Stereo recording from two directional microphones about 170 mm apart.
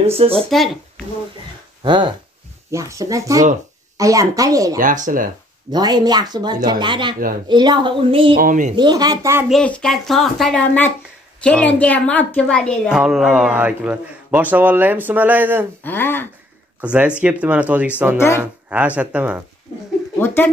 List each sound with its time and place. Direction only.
0.0 s speech: 35° right (ahead or behind)
0.4 s speech: centre (ahead or behind)
1.8 s speech: 25° right (ahead or behind)
4.7 s speech: 50° right (ahead or behind)
5.7 s speech: 25° right (ahead or behind)
8.4 s speech: 50° right (ahead or behind)
8.7 s speech: 25° right (ahead or behind)
9.5 s a woman's voice: 5° left (ahead or behind); by 15.6 s 10° right (ahead or behind)
15.8 s a woman's voice: 10° left (ahead or behind)
16.8 s a man's voice: 10° right (ahead or behind)
18.1 s a woman's voice: 15° left (ahead or behind)
18.4 s a man's voice: 10° right (ahead or behind)